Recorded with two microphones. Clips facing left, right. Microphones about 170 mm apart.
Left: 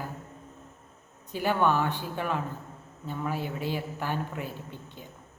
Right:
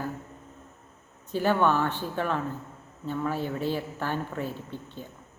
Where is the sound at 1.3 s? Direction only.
15° left (ahead or behind).